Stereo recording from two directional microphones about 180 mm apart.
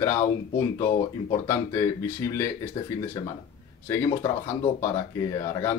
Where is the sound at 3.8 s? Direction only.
15° left (ahead or behind).